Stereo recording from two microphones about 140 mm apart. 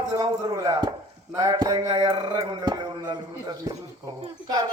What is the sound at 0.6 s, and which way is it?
Chop, 25° right (ahead or behind).